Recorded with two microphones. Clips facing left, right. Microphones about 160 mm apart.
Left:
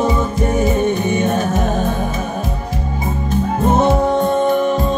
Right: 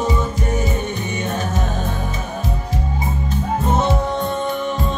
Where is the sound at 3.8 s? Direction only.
50° left (ahead or behind).